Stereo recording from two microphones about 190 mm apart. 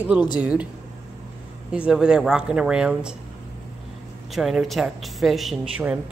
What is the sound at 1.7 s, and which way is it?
Speech, 5° right (ahead or behind).